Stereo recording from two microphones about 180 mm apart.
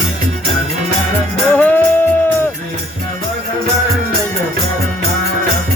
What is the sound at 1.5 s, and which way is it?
Music, 10° left (ahead or behind).